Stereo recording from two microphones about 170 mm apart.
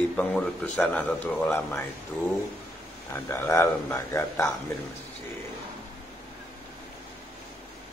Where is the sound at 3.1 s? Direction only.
15° left (ahead or behind).